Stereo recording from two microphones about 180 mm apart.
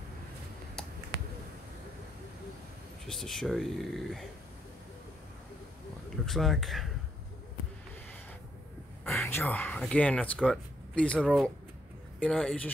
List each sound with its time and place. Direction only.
1.1 s a sound: 75° right (ahead or behind)
3.1 s speech: centre (ahead or behind)
6.2 s speech: centre (ahead or behind)
9.0 s speech: 10° left (ahead or behind)